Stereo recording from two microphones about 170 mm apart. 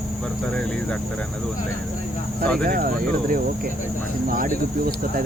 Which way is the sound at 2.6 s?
60° right (ahead or behind).